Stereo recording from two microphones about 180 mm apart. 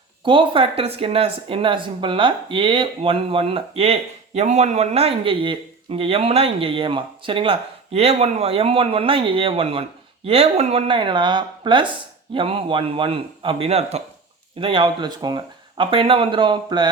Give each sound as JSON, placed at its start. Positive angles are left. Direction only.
{"t": 0.3, "sound": "a man's voice", "side_deg": -30}